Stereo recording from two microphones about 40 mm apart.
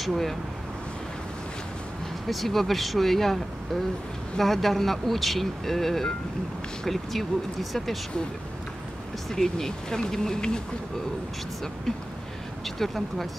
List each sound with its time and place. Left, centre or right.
0.0 s speech: centre
2.2 s speech: centre
9.3 s speech: centre
12.6 s speech: centre